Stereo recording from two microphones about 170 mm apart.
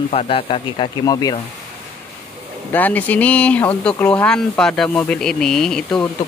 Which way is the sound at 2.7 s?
10° left (ahead or behind).